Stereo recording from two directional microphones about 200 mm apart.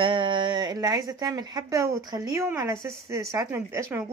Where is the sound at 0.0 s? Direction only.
25° right (ahead or behind).